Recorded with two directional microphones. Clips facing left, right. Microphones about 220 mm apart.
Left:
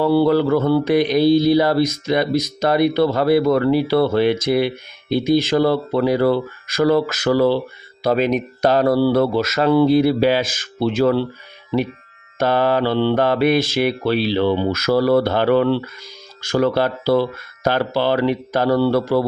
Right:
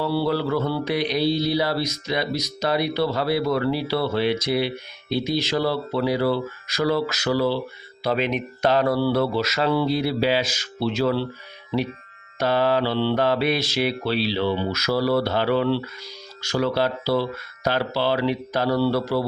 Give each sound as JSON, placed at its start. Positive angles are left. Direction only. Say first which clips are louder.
{"t": 0.0, "sound": "mantra", "louder": "left 8 dB", "side_deg": 50}
{"t": 12.4, "sound": "mantra", "louder": "left 3 dB", "side_deg": 50}